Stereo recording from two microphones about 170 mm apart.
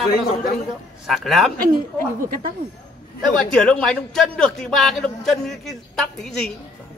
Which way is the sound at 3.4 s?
5° left (ahead or behind).